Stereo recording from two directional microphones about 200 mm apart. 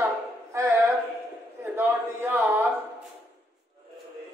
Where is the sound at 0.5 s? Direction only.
15° right (ahead or behind).